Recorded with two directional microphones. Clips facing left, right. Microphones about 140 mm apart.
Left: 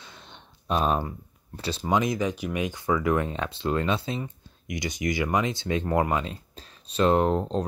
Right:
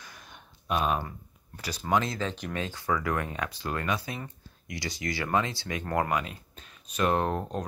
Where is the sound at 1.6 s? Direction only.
25° left (ahead or behind).